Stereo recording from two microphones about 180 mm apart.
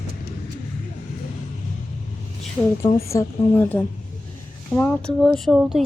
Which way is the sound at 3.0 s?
15° left (ahead or behind).